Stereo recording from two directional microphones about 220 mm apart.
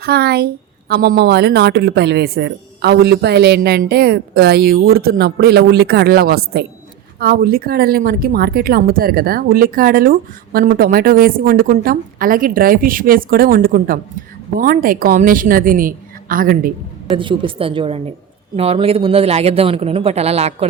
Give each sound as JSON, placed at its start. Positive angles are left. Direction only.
{"t": 0.0, "sound": "a woman's voice", "side_deg": -45}
{"t": 17.2, "sound": "speech", "side_deg": -25}